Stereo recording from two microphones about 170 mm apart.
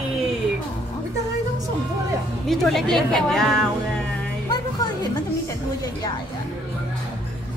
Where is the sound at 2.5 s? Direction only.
Centre (ahead or behind).